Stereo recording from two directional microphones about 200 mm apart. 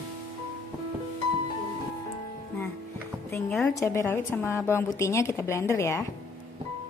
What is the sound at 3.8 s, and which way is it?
A woman's voice, 15° left (ahead or behind).